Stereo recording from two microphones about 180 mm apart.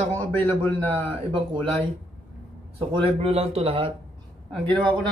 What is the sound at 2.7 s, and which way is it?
Speech, 30° right (ahead or behind).